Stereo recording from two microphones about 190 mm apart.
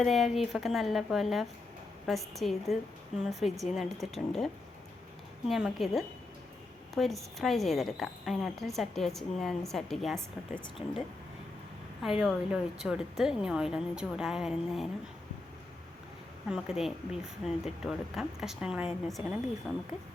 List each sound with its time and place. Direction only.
0.0 s a woman's voice: centre (ahead or behind)
10.8 s speech: 30° left (ahead or behind)
12.0 s a woman's voice: centre (ahead or behind)
16.5 s a woman's voice: 5° right (ahead or behind)